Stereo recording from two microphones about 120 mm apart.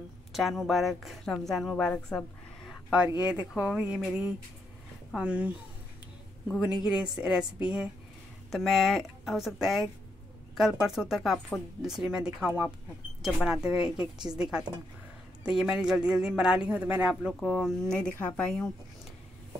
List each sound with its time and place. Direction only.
0.3 s a woman's voice: centre (ahead or behind)
2.9 s speech: 10° right (ahead or behind)
6.6 s a woman's voice: 5° right (ahead or behind)
17.3 s speech: 5° left (ahead or behind)